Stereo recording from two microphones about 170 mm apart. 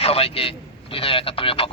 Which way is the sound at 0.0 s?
35° left (ahead or behind).